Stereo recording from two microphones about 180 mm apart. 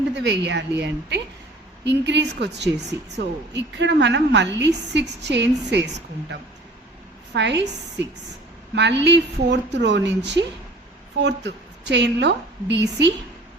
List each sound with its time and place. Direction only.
0.1 s a woman's voice: 75° right (ahead or behind)
7.3 s a woman's voice: 75° right (ahead or behind)